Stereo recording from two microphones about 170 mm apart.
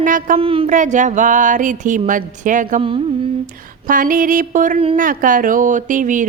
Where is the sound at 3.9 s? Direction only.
50° right (ahead or behind).